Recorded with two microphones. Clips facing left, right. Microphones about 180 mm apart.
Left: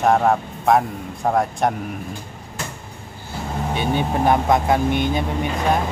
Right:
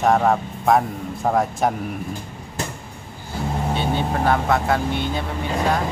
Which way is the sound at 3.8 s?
15° left (ahead or behind).